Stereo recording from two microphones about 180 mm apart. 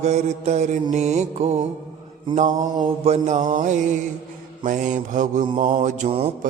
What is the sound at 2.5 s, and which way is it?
Mantra, 20° right (ahead or behind).